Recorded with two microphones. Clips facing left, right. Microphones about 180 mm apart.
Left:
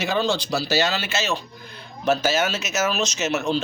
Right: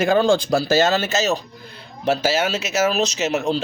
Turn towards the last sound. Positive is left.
turn(degrees=-30)  # may be behind; listen again after turning